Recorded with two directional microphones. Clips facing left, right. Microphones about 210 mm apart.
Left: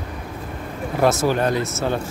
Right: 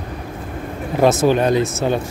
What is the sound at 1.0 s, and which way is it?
Speech, 20° right (ahead or behind).